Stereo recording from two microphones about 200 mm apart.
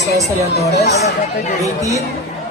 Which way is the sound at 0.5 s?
55° left (ahead or behind).